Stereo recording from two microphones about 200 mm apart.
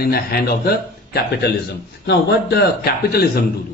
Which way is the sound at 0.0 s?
50° left (ahead or behind).